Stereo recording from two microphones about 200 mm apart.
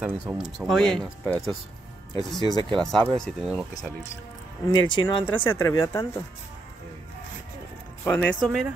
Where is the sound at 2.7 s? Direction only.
5° left (ahead or behind).